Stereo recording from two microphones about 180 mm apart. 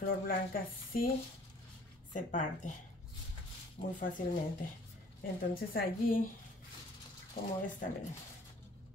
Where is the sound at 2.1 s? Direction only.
45° left (ahead or behind).